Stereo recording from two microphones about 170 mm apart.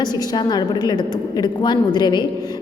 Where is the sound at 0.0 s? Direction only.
25° left (ahead or behind).